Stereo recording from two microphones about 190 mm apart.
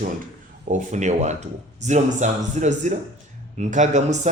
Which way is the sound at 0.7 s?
40° right (ahead or behind).